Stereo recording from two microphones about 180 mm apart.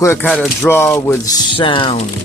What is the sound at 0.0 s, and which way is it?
Speech, 15° left (ahead or behind).